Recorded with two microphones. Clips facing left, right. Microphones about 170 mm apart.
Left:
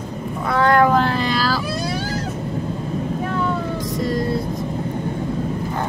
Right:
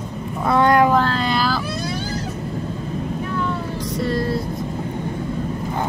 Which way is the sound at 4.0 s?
15° left (ahead or behind).